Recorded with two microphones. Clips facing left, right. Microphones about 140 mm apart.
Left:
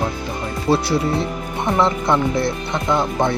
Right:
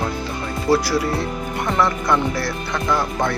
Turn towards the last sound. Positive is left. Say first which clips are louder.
# left 2 dB
turn(degrees=20)  # may be behind; listen again after turning